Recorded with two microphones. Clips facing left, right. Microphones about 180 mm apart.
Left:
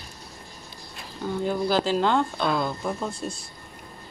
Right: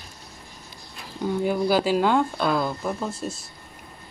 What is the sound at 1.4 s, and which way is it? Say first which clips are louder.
Speech: right 2 dB; 10° right (ahead or behind).